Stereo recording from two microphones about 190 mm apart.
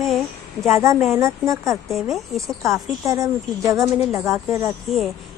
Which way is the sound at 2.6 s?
15° right (ahead or behind).